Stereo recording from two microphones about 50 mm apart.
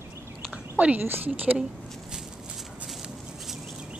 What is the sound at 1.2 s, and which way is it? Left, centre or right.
Speech, right.